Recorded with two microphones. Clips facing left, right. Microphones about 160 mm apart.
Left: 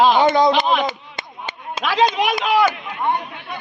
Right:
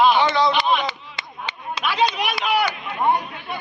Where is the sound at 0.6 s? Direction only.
45° left (ahead or behind).